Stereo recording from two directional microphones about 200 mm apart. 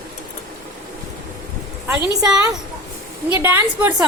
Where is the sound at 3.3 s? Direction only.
10° right (ahead or behind).